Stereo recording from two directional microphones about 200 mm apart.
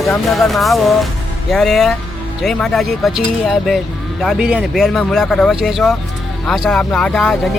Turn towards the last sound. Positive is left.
turn(degrees=5)  # may be behind; listen again after turning